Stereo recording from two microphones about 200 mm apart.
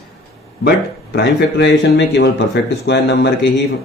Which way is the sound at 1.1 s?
60° left (ahead or behind).